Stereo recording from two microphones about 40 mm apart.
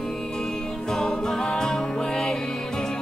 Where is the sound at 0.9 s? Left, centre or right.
Centre.